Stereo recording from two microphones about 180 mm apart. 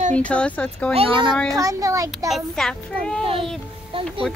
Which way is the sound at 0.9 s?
30° right (ahead or behind).